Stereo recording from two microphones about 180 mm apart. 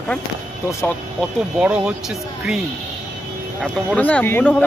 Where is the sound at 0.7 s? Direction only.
15° left (ahead or behind).